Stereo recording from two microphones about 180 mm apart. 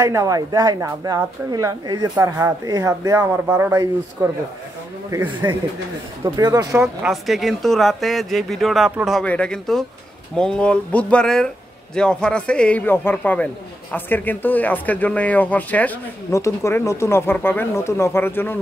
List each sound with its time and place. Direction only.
0.0 s speech: 15° right (ahead or behind)
7.1 s speech: centre (ahead or behind)